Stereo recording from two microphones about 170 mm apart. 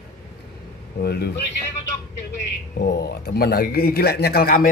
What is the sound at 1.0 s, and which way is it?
Speech, 70° left (ahead or behind).